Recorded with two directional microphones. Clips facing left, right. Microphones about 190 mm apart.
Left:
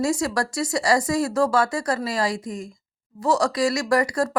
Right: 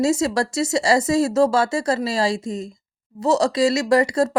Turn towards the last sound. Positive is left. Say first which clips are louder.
# right 4 dB
turn(degrees=-25)  # may be behind; listen again after turning